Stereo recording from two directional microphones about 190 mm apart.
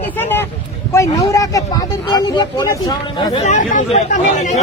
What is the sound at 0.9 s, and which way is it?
Speech, 15° left (ahead or behind).